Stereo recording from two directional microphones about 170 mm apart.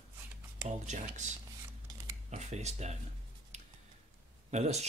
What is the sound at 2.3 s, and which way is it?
Speech, 40° right (ahead or behind).